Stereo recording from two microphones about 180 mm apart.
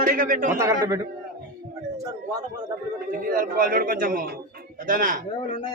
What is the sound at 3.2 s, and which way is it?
Speech, 50° right (ahead or behind).